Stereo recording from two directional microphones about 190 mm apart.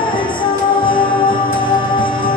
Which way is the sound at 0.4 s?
25° left (ahead or behind).